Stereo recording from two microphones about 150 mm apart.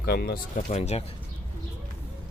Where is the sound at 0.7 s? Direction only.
45° left (ahead or behind).